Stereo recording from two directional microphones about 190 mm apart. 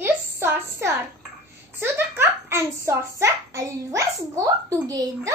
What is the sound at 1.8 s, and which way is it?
A child's voice, 10° right (ahead or behind).